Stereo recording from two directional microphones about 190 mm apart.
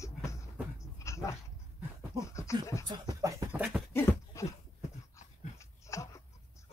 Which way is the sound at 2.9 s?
20° right (ahead or behind).